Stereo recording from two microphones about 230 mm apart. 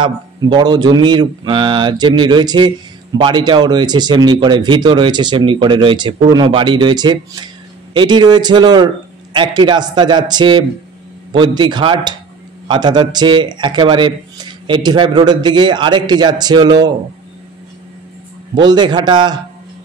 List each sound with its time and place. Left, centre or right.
0.0 s speech: centre
18.7 s speech: centre